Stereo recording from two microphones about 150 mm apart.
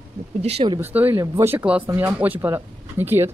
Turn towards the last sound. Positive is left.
turn(degrees=-15)  # may be behind; listen again after turning